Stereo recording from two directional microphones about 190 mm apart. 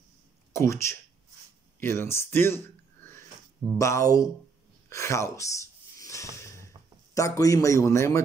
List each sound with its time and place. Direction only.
0.5 s speech: 15° left (ahead or behind)
4.8 s a sound: 15° left (ahead or behind)
7.2 s speech: 15° left (ahead or behind)